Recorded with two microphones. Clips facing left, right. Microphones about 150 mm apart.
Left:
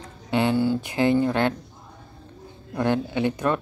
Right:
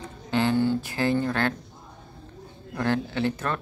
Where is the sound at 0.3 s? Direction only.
15° left (ahead or behind).